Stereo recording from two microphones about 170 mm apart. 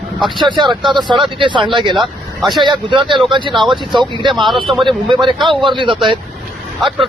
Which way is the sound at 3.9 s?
30° right (ahead or behind).